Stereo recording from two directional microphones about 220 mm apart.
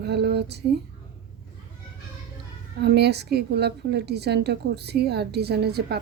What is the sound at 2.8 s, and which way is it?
A woman's voice, 50° right (ahead or behind).